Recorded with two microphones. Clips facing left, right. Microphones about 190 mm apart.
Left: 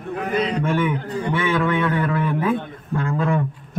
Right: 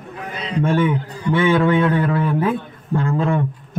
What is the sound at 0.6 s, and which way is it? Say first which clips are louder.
A man's voice: right 3 dB; 30° right (ahead or behind).